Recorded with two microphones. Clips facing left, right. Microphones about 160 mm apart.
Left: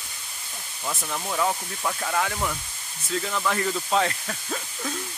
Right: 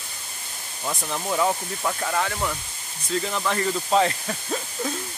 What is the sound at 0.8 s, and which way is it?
Speech, 10° right (ahead or behind).